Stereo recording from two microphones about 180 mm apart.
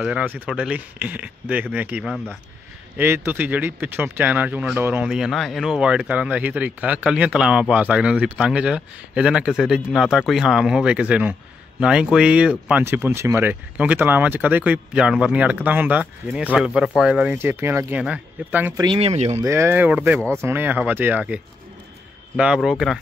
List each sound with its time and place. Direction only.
0.0 s speech: 5° right (ahead or behind)
18.8 s speech: 30° right (ahead or behind)
19.4 s speech: 15° right (ahead or behind)
22.4 s speech: 5° right (ahead or behind)